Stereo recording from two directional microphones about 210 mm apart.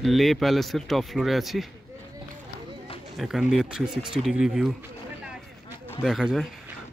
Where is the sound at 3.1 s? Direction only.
Centre (ahead or behind).